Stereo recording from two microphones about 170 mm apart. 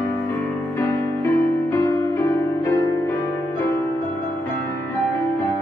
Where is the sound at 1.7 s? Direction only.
15° left (ahead or behind).